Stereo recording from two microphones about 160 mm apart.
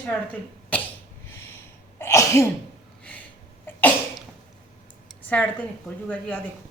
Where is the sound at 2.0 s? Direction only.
20° left (ahead or behind).